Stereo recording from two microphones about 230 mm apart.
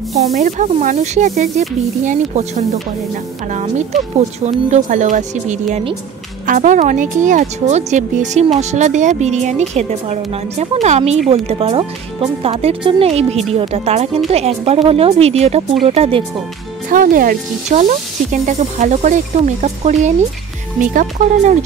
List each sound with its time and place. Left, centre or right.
0.1 s speech: right
16.9 s speech: right